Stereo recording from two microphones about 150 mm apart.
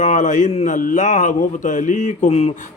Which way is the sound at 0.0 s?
55° left (ahead or behind).